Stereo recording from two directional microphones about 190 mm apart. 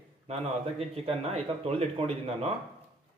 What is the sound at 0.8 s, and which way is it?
Speech, 30° right (ahead or behind).